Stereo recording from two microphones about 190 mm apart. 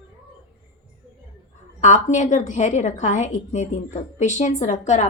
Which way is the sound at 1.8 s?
40° left (ahead or behind).